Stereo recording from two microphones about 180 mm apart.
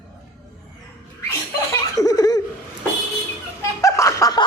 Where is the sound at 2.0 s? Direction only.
20° left (ahead or behind).